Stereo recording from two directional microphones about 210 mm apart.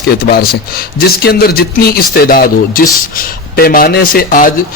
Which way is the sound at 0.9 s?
45° left (ahead or behind).